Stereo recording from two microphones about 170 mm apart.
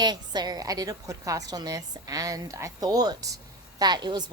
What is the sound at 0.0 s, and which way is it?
A woman's voice, 25° right (ahead or behind).